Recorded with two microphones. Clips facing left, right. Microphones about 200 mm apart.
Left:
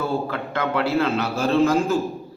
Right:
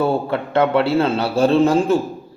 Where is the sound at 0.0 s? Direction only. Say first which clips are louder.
Right 6 dB; 30° right (ahead or behind).